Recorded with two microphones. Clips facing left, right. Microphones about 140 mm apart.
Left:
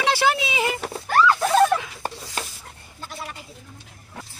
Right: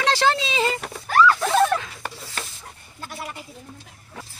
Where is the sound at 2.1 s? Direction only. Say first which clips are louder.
Left 3 dB; 15° left (ahead or behind).